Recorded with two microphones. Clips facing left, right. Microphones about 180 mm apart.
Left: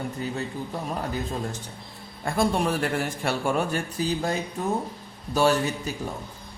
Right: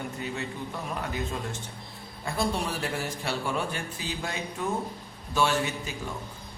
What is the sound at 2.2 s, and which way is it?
A woman's voice, 50° left (ahead or behind).